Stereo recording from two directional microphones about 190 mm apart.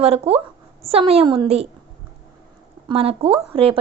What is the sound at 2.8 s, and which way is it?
Speech, 30° right (ahead or behind).